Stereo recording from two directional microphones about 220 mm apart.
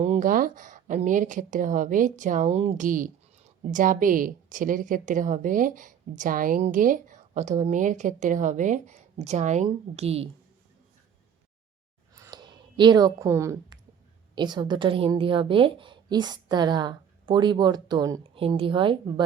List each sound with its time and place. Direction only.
0.0 s speech: 35° right (ahead or behind)
12.1 s a sound: 15° right (ahead or behind)
14.3 s a woman's voice: 20° right (ahead or behind)